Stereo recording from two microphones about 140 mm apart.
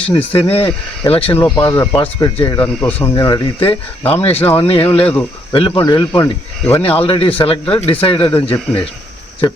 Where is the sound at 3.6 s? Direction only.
40° left (ahead or behind).